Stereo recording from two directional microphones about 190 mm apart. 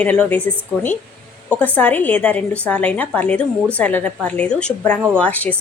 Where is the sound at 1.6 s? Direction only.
10° left (ahead or behind).